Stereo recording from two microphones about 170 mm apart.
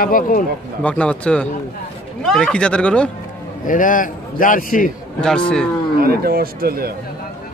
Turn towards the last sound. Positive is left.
turn(degrees=-60)  # may be behind; listen again after turning